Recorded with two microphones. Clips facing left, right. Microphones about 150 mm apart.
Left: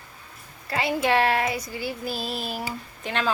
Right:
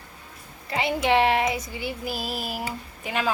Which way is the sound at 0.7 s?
20° right (ahead or behind).